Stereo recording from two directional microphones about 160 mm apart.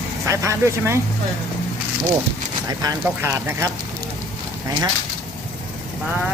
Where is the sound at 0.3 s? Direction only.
20° right (ahead or behind).